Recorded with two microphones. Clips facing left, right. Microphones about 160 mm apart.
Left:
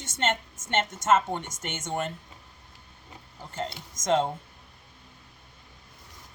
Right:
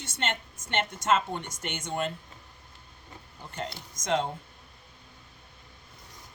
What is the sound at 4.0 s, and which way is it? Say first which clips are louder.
Speech: left 4 dB; 45° left (ahead or behind).